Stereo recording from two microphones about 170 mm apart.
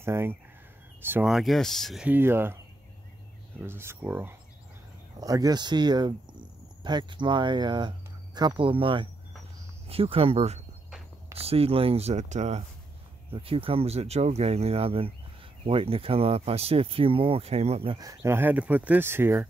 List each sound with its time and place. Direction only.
0.0 s speech: 15° right (ahead or behind)
1.3 s speech: centre (ahead or behind)
3.6 s speech: 15° right (ahead or behind); by 17.9 s 35° right (ahead or behind)
17.9 s speech: 20° right (ahead or behind)